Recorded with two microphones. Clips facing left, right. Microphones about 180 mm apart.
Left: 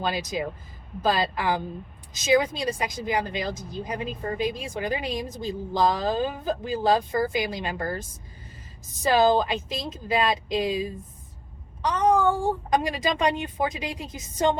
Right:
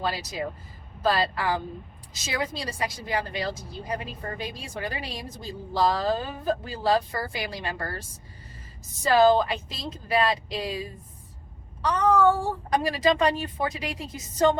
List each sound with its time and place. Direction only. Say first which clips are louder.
0.0 s a woman's voice: left 2 dB; 20° left (ahead or behind)
9.0 s a woman's voice: right 1 dB; 20° left (ahead or behind)